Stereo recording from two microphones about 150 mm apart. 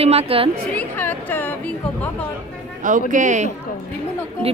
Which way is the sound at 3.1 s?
55° right (ahead or behind).